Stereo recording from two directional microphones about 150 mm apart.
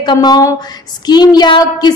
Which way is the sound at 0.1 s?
25° left (ahead or behind).